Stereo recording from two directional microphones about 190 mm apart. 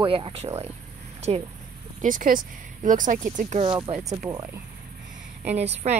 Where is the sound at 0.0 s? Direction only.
30° right (ahead or behind).